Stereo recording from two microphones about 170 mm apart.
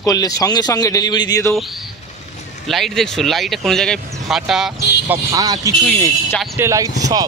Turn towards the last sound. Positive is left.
turn(degrees=-20)  # may be behind; listen again after turning